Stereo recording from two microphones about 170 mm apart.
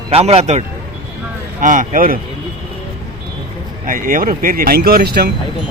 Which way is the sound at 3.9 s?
55° right (ahead or behind).